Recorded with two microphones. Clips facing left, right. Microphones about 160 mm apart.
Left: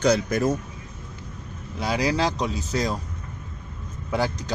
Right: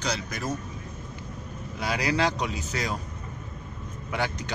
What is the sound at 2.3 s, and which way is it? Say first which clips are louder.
Speech: left 4 dB; 35° left (ahead or behind).